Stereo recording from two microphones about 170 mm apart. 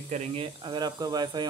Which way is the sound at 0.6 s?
25° right (ahead or behind).